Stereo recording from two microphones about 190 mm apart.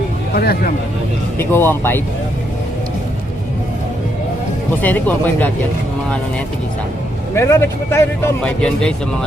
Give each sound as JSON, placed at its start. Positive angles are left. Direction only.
{"t": 0.3, "sound": "speech", "side_deg": 55}
{"t": 1.4, "sound": "speech", "side_deg": 10}
{"t": 4.8, "sound": "speech", "side_deg": 10}
{"t": 7.3, "sound": "speech", "side_deg": 15}